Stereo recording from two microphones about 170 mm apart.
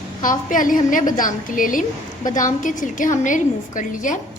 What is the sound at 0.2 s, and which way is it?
A woman's voice, 50° left (ahead or behind).